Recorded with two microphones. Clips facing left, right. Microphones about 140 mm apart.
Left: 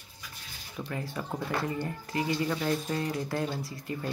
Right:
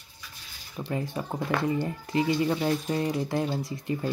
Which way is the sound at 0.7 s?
20° right (ahead or behind).